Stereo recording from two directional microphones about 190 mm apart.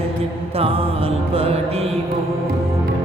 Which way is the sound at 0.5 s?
30° right (ahead or behind).